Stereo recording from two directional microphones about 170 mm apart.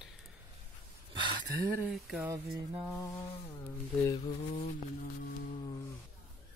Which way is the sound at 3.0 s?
20° left (ahead or behind).